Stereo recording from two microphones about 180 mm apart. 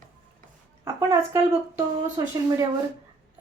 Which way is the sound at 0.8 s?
15° right (ahead or behind).